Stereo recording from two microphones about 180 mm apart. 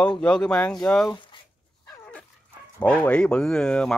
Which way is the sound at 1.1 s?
25° left (ahead or behind).